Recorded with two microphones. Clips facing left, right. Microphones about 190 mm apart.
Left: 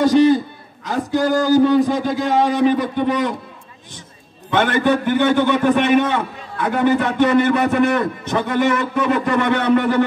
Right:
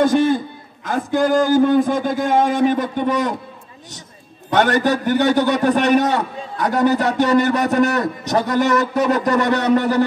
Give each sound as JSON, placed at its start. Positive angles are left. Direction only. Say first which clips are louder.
{"t": 0.0, "sound": "speech", "louder": "left 2 dB", "side_deg": -50}
{"t": 4.5, "sound": "a man's voice", "louder": "even", "side_deg": -40}